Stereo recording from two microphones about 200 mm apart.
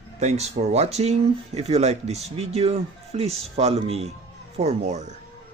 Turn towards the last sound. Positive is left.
turn(degrees=-35)  # may be behind; listen again after turning